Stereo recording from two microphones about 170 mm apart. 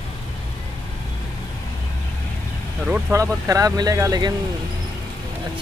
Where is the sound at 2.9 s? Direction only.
15° right (ahead or behind).